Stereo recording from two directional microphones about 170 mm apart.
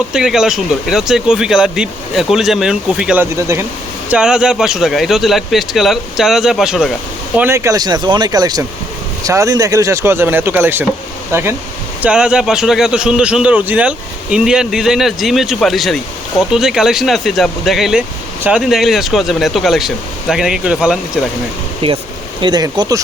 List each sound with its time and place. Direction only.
0.1 s a man's voice: 5° right (ahead or behind)
3.3 s speech: 15° right (ahead or behind)
4.1 s a man's voice: 5° right (ahead or behind)
7.3 s a man's voice: 15° right (ahead or behind)
21.8 s speech: 35° right (ahead or behind)